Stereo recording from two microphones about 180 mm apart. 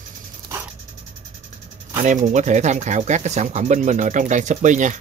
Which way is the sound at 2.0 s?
40° right (ahead or behind).